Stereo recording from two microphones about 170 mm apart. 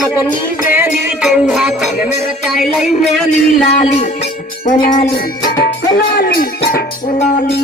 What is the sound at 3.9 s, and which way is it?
Music, 35° left (ahead or behind).